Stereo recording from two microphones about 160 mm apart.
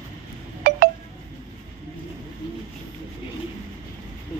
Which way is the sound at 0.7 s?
70° right (ahead or behind).